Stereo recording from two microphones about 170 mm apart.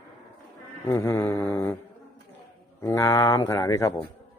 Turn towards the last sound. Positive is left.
turn(degrees=15)  # may be behind; listen again after turning